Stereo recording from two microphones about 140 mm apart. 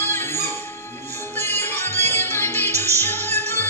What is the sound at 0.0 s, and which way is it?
Music, 15° left (ahead or behind).